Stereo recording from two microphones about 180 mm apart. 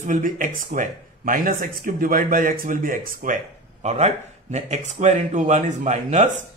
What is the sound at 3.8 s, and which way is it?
Speech, 40° right (ahead or behind).